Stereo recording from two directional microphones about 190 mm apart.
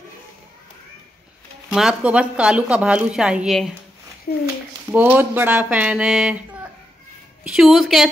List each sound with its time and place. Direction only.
1.7 s speech: 5° right (ahead or behind)
4.3 s a child's voice: 50° left (ahead or behind)
4.9 s speech: 10° right (ahead or behind)
7.4 s speech: 5° right (ahead or behind)